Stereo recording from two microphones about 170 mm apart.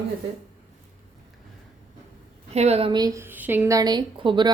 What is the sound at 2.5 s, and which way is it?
A woman's voice, 40° right (ahead or behind).